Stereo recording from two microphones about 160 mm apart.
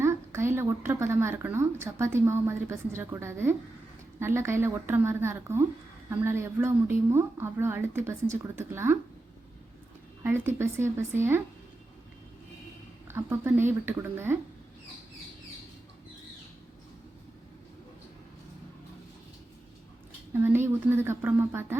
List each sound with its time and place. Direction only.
0.0 s speech: 15° right (ahead or behind)
10.2 s speech: 15° right (ahead or behind)
13.1 s speech: 15° right (ahead or behind)
20.3 s speech: 15° right (ahead or behind)